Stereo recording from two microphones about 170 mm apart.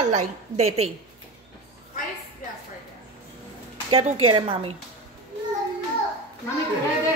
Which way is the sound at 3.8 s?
30° right (ahead or behind).